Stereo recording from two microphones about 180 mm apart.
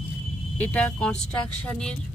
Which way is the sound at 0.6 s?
5° left (ahead or behind).